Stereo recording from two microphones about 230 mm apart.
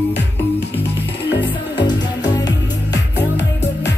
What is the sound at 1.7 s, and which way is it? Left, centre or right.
Music, centre.